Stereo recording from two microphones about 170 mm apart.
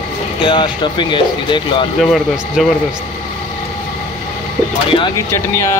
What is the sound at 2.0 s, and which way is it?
Speech, centre (ahead or behind).